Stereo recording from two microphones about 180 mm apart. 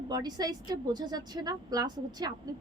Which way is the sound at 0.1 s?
20° right (ahead or behind).